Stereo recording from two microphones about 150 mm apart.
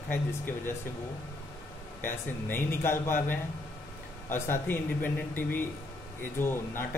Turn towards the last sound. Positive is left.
turn(degrees=15)  # may be behind; listen again after turning